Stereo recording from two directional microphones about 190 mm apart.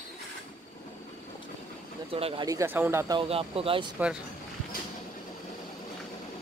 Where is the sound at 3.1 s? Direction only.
30° right (ahead or behind).